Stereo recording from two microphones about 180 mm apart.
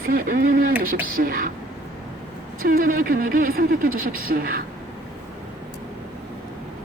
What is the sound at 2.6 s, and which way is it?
Speech, 50° right (ahead or behind).